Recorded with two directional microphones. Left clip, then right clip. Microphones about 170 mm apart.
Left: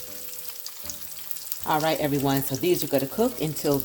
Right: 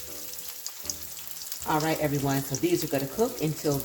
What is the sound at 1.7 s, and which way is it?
Speech, 70° left (ahead or behind).